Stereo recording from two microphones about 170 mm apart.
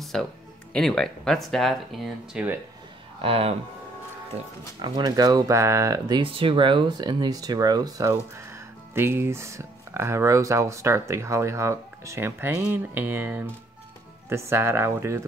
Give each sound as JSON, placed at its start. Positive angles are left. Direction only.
{"t": 0.1, "sound": "speech", "side_deg": 5}
{"t": 3.2, "sound": "speech", "side_deg": -35}
{"t": 4.7, "sound": "speech", "side_deg": -25}